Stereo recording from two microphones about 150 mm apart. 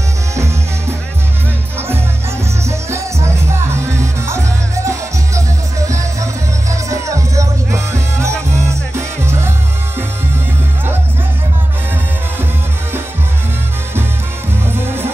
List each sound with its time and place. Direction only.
0.3 s music: 20° right (ahead or behind)
2.6 s music: 20° right (ahead or behind)